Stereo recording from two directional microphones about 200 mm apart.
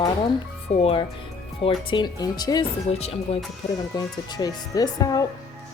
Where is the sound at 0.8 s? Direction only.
30° left (ahead or behind).